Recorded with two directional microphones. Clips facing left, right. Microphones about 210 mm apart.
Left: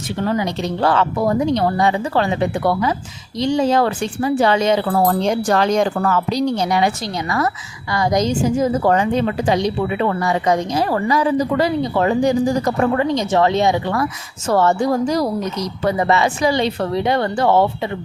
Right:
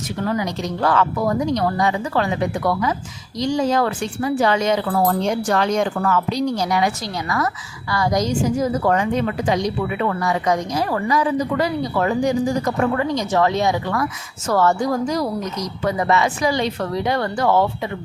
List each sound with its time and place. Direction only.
0.2 s a woman's voice: 25° left (ahead or behind)
7.9 s a woman's voice: 20° left (ahead or behind)